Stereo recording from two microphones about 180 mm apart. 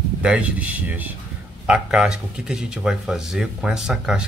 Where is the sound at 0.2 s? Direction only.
5° right (ahead or behind).